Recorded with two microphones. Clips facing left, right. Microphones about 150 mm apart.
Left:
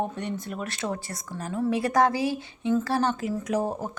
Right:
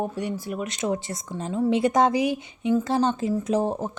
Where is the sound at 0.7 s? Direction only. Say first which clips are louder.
Right 5 dB; 20° right (ahead or behind).